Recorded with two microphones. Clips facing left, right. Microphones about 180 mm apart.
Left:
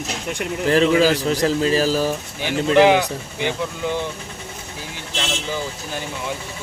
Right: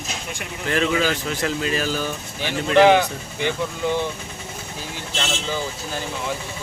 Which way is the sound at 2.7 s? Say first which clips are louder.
Right 1 dB; 15° left (ahead or behind).